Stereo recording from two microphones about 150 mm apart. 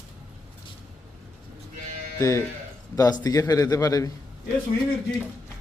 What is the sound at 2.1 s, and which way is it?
A man's voice, 20° left (ahead or behind).